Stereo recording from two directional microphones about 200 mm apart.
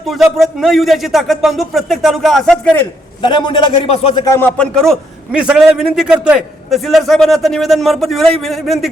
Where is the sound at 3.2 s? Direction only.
25° left (ahead or behind).